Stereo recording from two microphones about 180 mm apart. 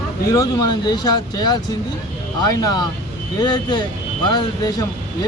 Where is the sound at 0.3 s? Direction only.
20° left (ahead or behind).